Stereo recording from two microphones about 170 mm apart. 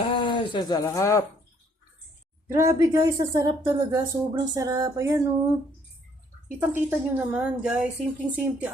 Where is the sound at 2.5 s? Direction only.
15° right (ahead or behind).